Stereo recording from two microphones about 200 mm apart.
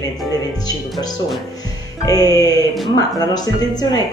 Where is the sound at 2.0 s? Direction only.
20° left (ahead or behind).